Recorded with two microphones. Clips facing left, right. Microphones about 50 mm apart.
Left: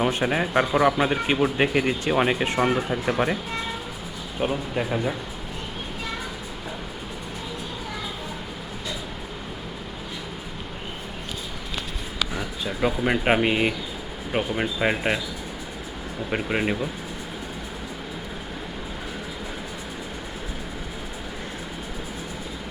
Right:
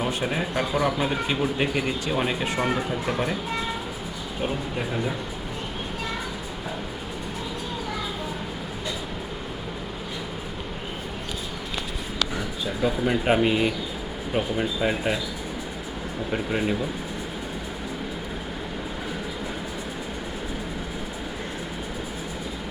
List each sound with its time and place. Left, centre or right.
0.0 s speech: left
4.4 s speech: centre
12.2 s a sound: centre
13.2 s speech: left
16.3 s speech: left